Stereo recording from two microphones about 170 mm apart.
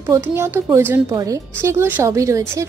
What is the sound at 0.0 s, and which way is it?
A woman's voice, 15° right (ahead or behind).